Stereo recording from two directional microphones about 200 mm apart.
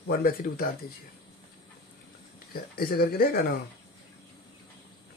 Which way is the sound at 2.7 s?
50° left (ahead or behind).